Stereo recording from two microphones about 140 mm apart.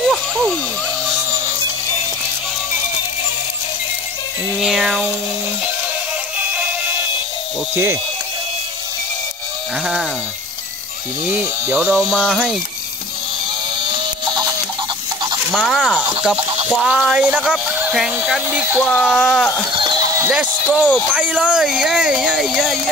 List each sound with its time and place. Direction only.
0.0 s a sound: centre (ahead or behind)
4.6 s speech: 5° right (ahead or behind)
7.7 s speech: 15° right (ahead or behind)
11.2 s speech: 10° right (ahead or behind)
12.0 s speech: centre (ahead or behind)
13.7 s a sound: 30° right (ahead or behind)
15.5 s speech: centre (ahead or behind)
19.8 s neigh: 35° right (ahead or behind)
20.2 s speech: 10° right (ahead or behind)